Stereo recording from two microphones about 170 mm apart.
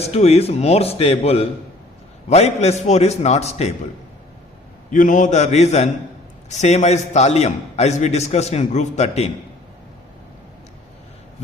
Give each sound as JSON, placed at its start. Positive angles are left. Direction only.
{"t": 0.0, "sound": "a man's voice", "side_deg": 40}
{"t": 4.9, "sound": "a man's voice", "side_deg": 50}